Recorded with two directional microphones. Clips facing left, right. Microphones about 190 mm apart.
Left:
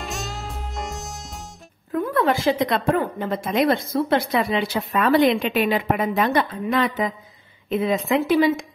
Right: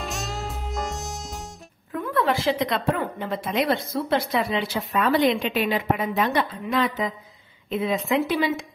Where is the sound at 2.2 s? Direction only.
50° left (ahead or behind).